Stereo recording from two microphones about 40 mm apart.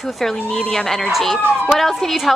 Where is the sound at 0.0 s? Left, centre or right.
Centre.